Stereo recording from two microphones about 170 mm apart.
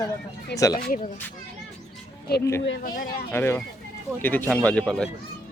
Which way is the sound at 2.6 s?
90° left.